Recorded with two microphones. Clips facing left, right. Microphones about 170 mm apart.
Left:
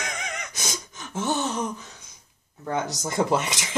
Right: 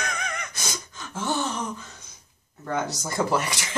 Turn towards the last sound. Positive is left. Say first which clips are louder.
# left 1 dB
turn(degrees=20)  # may be behind; listen again after turning